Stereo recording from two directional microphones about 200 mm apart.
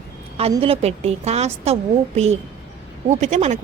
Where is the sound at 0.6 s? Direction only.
30° right (ahead or behind).